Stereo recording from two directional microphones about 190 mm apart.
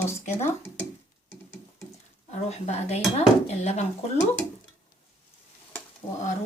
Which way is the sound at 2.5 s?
35° left (ahead or behind).